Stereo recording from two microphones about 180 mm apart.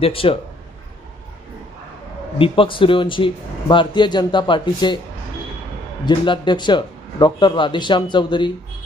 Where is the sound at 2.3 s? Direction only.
30° left (ahead or behind).